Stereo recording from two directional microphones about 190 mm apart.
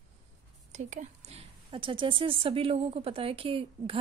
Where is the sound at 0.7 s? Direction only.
40° right (ahead or behind).